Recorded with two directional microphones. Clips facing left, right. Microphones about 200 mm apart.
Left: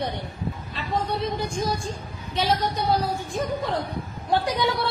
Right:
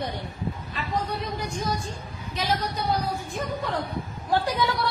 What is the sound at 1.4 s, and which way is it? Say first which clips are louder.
Speech: left 3 dB; 90° left.